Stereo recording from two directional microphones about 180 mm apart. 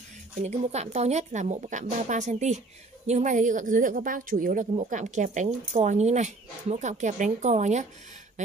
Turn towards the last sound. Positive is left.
turn(degrees=-40)  # may be behind; listen again after turning